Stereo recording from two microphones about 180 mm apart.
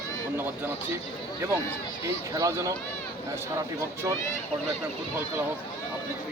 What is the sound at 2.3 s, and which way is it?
Speech, 15° right (ahead or behind).